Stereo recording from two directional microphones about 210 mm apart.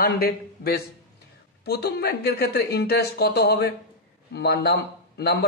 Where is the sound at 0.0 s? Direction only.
45° left (ahead or behind).